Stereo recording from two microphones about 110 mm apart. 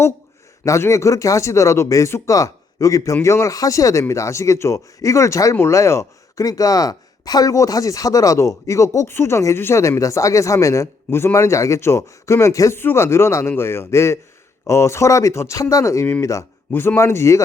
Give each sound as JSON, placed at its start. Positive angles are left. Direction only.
{"t": 0.6, "sound": "speech", "side_deg": 25}